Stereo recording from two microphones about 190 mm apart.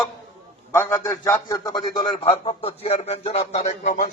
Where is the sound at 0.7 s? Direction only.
15° left (ahead or behind).